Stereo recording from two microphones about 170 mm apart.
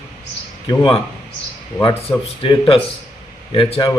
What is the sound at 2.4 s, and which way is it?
A man's voice, 30° left (ahead or behind).